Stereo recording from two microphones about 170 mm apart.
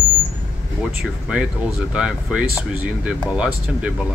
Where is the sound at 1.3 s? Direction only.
5° right (ahead or behind).